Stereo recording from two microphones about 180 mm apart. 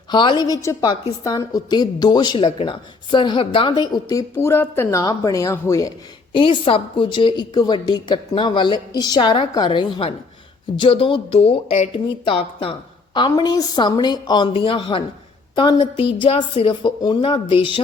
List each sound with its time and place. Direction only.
0.1 s a woman's voice: 25° left (ahead or behind)
6.3 s a woman's voice: 30° left (ahead or behind)